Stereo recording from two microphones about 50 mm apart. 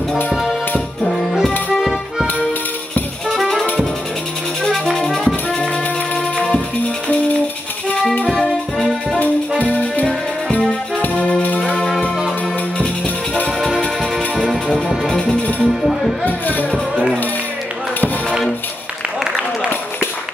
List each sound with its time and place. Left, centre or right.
0.3 s music: centre
1.7 s music: centre
3.3 s music: centre
4.6 s brass instrument: centre
6.3 s music: left
8.3 s music: centre
9.6 s music: left
12.7 s music: centre
14.1 s music: centre
15.6 s music: centre
16.3 s music: left